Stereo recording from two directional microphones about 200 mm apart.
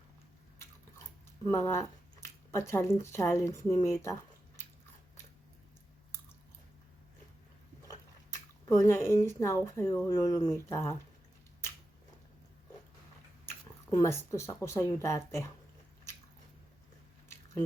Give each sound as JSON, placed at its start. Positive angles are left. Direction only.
{"t": 1.5, "sound": "speech", "side_deg": 15}
{"t": 7.9, "sound": "speech", "side_deg": 15}
{"t": 13.9, "sound": "speech", "side_deg": 15}